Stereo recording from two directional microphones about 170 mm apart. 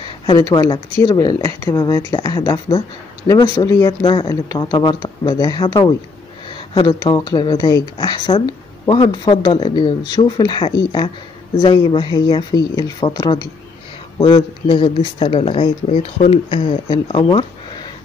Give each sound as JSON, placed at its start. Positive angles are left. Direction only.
{"t": 0.3, "sound": "speech", "side_deg": 25}